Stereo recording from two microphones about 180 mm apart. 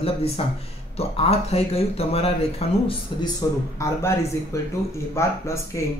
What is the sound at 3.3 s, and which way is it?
Speech, 15° left (ahead or behind).